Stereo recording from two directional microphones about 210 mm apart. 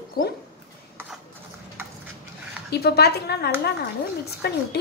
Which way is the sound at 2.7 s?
50° left (ahead or behind).